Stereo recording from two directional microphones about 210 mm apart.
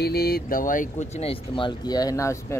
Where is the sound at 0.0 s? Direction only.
50° left (ahead or behind).